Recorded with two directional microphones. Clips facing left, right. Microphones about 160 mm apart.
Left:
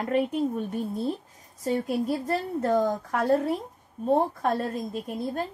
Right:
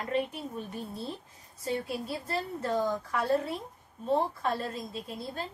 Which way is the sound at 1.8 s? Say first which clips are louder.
Left 9 dB; 50° left (ahead or behind).